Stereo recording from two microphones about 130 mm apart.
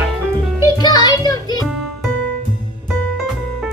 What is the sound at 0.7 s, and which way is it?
Music, 35° left (ahead or behind).